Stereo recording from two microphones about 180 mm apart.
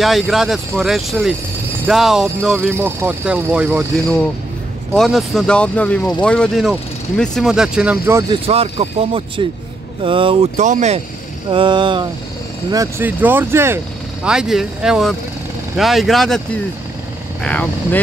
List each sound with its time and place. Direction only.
0.0 s speech: centre (ahead or behind)
4.9 s speech: centre (ahead or behind)
8.5 s speech: 35° right (ahead or behind)
10.0 s a sound: 30° right (ahead or behind)
10.6 s speech: 40° right (ahead or behind)
11.5 s a sound: 25° right (ahead or behind)
12.7 s speech: 15° right (ahead or behind)
14.2 s speech: 5° right (ahead or behind)
17.4 s speech: 10° left (ahead or behind)